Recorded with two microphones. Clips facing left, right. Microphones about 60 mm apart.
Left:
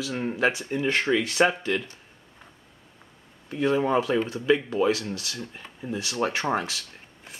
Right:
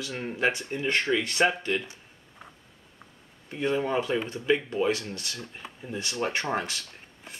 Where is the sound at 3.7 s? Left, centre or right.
Centre.